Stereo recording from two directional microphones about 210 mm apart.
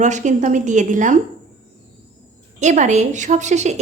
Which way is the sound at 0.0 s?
35° right (ahead or behind).